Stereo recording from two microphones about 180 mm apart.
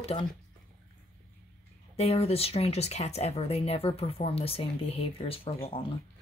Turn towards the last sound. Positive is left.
turn(degrees=30)  # may be behind; listen again after turning